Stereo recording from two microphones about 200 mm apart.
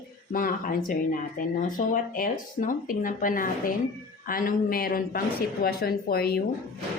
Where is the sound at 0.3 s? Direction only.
45° left (ahead or behind).